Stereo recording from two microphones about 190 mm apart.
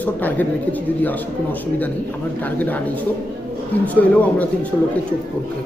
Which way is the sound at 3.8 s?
10° left (ahead or behind).